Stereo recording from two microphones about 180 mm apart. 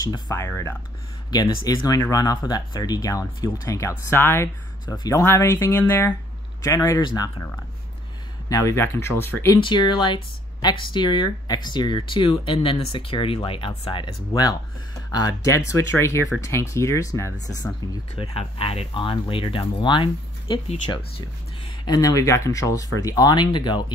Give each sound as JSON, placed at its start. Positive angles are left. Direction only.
{"t": 0.0, "sound": "speech", "side_deg": 20}
{"t": 8.5, "sound": "speech", "side_deg": 20}
{"t": 9.6, "sound": "speech", "side_deg": 25}
{"t": 18.1, "sound": "speech", "side_deg": 30}